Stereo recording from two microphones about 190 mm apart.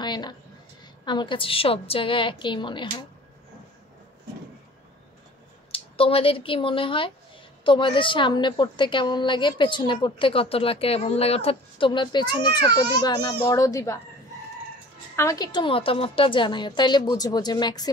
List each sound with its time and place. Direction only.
0.0 s a sound: 25° left (ahead or behind)
1.0 s a woman's voice: 25° left (ahead or behind)
5.7 s a woman's voice: 30° left (ahead or behind)
15.1 s a woman's voice: 15° left (ahead or behind)